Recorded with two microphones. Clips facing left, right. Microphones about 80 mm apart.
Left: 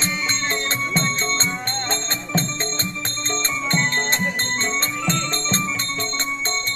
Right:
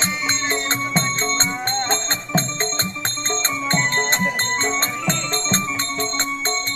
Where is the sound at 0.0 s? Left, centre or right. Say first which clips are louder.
Right 1 dB; right.